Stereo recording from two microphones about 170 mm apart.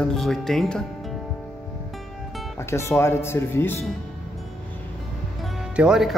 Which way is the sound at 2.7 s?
15° left (ahead or behind).